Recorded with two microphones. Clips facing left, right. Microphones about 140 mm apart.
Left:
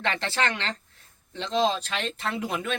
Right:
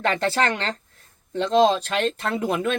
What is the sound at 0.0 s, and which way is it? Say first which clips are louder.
Speech: right 5 dB; 40° right (ahead or behind).